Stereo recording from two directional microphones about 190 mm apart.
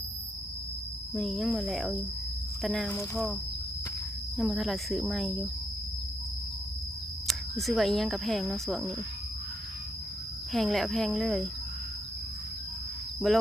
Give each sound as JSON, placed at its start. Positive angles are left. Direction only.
{"t": 1.1, "sound": "speech", "side_deg": 0}
{"t": 4.4, "sound": "speech", "side_deg": 0}
{"t": 7.3, "sound": "speech", "side_deg": 0}
{"t": 10.5, "sound": "speech", "side_deg": 0}
{"t": 13.1, "sound": "speech", "side_deg": 0}